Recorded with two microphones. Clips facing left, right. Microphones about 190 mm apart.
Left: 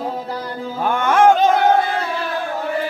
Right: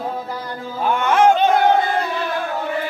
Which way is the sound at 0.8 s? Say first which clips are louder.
Left 1 dB; 50° left (ahead or behind).